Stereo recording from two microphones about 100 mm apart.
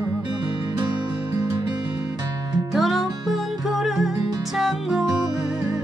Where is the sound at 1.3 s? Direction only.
30° right (ahead or behind).